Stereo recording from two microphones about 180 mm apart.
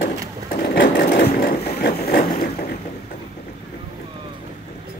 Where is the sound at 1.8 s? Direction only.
55° left (ahead or behind).